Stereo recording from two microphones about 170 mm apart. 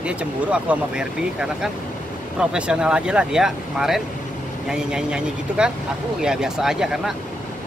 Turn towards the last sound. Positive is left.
turn(degrees=-5)  # may be behind; listen again after turning